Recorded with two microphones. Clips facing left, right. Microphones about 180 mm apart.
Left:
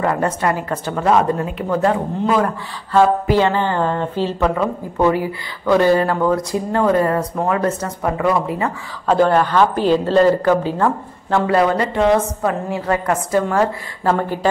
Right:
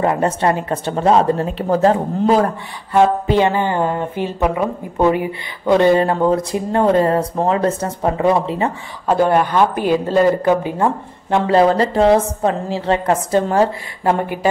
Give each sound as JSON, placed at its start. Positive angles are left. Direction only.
{"t": 0.0, "sound": "speech", "side_deg": -25}
{"t": 2.9, "sound": "speech", "side_deg": -20}
{"t": 9.0, "sound": "speech", "side_deg": -15}
{"t": 14.0, "sound": "speech", "side_deg": -15}